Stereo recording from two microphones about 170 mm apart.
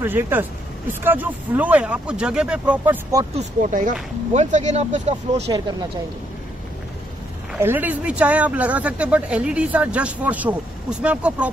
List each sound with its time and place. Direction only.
0.0 s speech: 10° right (ahead or behind)
3.3 s speech: 50° right (ahead or behind)
7.5 s speech: 10° right (ahead or behind)